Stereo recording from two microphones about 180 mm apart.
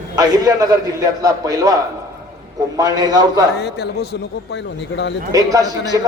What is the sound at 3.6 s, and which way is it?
A man's voice, 65° left (ahead or behind).